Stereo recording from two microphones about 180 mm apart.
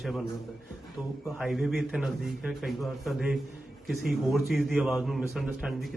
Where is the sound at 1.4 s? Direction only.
Centre (ahead or behind).